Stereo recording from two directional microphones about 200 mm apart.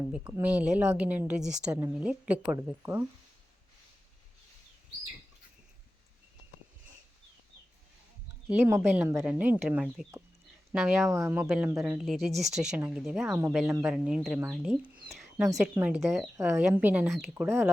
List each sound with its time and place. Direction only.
0.1 s speech: 5° right (ahead or behind)
8.4 s speech: 10° right (ahead or behind)
15.0 s a sound: centre (ahead or behind)
15.6 s speech: 5° right (ahead or behind)
17.3 s speech: 10° right (ahead or behind)